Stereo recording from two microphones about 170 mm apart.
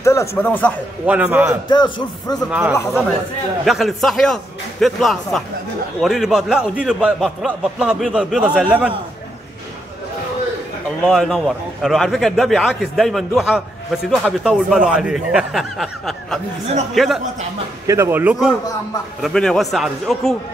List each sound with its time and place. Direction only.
0.0 s a sound: 15° left (ahead or behind)
0.4 s speech: 10° left (ahead or behind)
1.0 s speech: 10° right (ahead or behind)
1.7 s a man's voice: 25° left (ahead or behind)
3.6 s a man's voice: centre (ahead or behind)
11.1 s a man's voice: centre (ahead or behind)
17.8 s a man's voice: 15° right (ahead or behind); by 20.3 s centre (ahead or behind)